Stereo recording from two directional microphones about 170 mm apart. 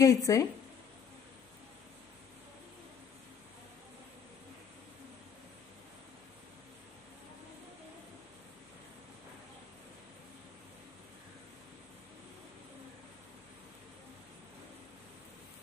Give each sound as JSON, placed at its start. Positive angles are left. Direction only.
{"t": 0.0, "sound": "speech", "side_deg": 20}